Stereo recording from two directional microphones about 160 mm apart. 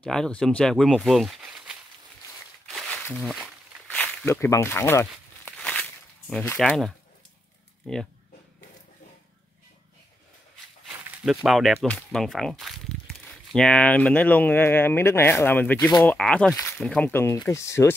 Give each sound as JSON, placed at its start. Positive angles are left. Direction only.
{"t": 0.0, "sound": "speech", "side_deg": 5}
{"t": 2.6, "sound": "a sound", "side_deg": 0}
{"t": 3.2, "sound": "speech", "side_deg": 0}
{"t": 3.8, "sound": "a sound", "side_deg": 5}
{"t": 6.6, "sound": "speech", "side_deg": 5}
{"t": 10.9, "sound": "speech", "side_deg": -5}